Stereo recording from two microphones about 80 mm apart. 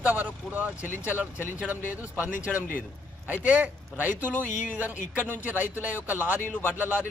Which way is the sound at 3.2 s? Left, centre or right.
Centre.